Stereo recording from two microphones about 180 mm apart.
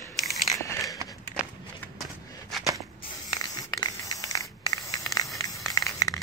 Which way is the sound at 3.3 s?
20° left (ahead or behind).